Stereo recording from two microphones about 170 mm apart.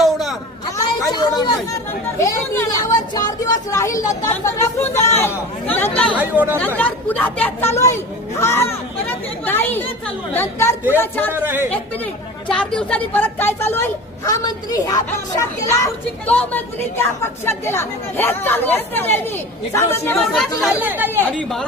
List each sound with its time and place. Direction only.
0.0 s a sound: centre (ahead or behind)
1.1 s chatter: 25° left (ahead or behind)
2.1 s speech: 20° left (ahead or behind)
6.1 s speech: 10° right (ahead or behind)
6.6 s speech: 10° left (ahead or behind)
11.3 s speech: 10° right (ahead or behind)
12.4 s speech: 5° left (ahead or behind)
20.6 s speech: 10° right (ahead or behind)
21.3 s speech: 5° left (ahead or behind)